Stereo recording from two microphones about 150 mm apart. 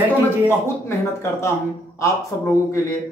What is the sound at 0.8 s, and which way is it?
A man's voice, 20° left (ahead or behind).